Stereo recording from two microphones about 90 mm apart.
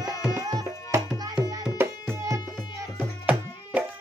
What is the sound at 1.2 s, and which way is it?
Music, 45° right (ahead or behind).